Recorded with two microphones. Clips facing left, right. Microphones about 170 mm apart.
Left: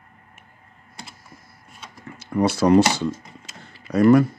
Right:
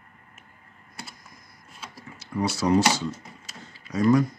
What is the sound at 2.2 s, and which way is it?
Speech, 55° left (ahead or behind).